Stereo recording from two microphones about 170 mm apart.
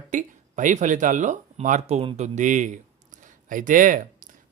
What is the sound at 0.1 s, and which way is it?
A man's voice, 50° right (ahead or behind).